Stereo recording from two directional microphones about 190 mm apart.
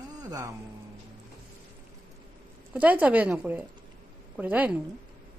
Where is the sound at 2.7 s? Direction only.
10° right (ahead or behind).